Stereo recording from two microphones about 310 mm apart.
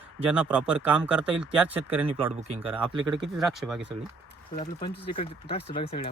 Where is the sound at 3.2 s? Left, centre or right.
Centre.